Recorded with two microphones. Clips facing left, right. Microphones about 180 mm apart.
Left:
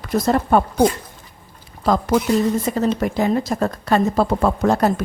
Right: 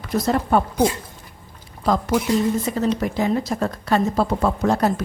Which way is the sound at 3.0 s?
50° left (ahead or behind).